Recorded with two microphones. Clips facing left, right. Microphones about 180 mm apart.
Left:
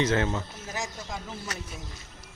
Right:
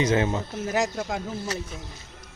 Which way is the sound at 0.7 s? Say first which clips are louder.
Right 10 dB; 65° right (ahead or behind).